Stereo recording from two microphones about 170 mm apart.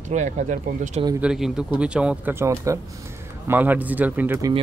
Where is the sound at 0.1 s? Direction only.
45° right (ahead or behind).